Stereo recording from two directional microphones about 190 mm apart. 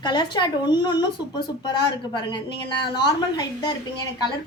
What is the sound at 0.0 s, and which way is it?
A woman's voice, 25° left (ahead or behind).